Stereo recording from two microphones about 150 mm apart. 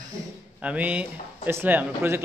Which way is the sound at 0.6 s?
10° right (ahead or behind).